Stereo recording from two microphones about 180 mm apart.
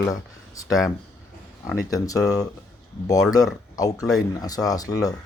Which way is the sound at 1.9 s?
20° left (ahead or behind).